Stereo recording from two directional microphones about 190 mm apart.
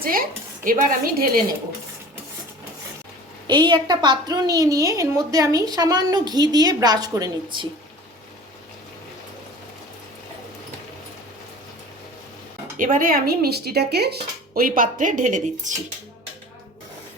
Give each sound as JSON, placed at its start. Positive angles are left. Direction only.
{"t": 0.0, "sound": "speech", "side_deg": -50}
{"t": 3.4, "sound": "a woman's voice", "side_deg": -25}
{"t": 12.7, "sound": "speech", "side_deg": -45}